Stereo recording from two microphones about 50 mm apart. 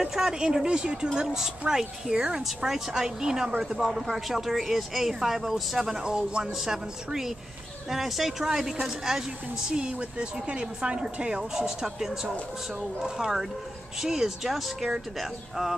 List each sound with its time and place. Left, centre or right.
0.0 s a woman's voice: centre
14.0 s a woman's voice: centre